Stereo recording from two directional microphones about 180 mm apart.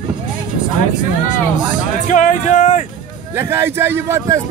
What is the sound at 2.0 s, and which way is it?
Speech, 45° left (ahead or behind).